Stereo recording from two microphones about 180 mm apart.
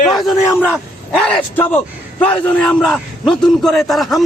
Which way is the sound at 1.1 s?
5° left (ahead or behind).